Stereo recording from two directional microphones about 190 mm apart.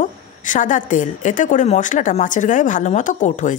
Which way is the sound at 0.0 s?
40° left (ahead or behind).